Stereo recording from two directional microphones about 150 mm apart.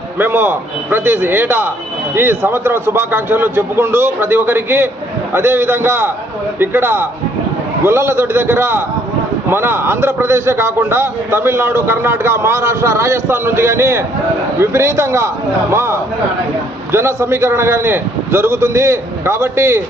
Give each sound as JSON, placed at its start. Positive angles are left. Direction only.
{"t": 0.2, "sound": "a man's voice", "side_deg": -15}